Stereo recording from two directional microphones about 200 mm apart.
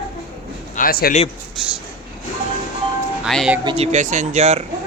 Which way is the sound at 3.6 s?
25° right (ahead or behind).